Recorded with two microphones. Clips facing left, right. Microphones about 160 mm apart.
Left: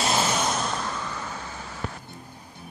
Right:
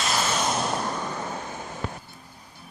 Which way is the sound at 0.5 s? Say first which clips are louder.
Right 1 dB; 10° right (ahead or behind).